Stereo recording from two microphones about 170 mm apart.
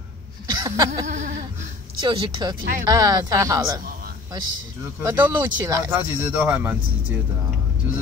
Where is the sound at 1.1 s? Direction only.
45° right (ahead or behind).